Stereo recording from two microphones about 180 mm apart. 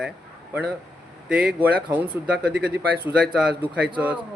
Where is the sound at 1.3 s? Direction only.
5° right (ahead or behind).